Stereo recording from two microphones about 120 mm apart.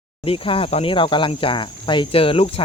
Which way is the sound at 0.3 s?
50° left (ahead or behind).